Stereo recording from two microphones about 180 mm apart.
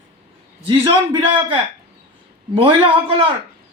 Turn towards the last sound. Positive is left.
turn(degrees=-30)  # may be behind; listen again after turning